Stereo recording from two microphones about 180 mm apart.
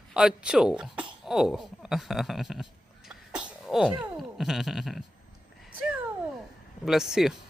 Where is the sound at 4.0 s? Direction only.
Centre (ahead or behind).